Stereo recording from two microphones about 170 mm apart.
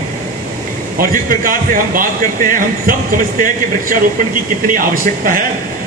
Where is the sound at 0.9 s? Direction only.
55° right (ahead or behind).